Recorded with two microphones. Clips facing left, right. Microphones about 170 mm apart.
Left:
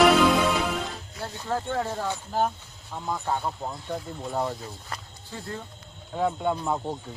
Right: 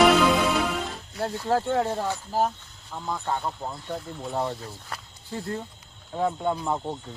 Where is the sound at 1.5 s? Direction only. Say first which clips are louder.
Right 5 dB; 30° right (ahead or behind).